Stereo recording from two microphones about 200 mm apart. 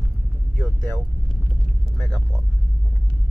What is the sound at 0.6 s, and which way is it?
Speech, 10° left (ahead or behind).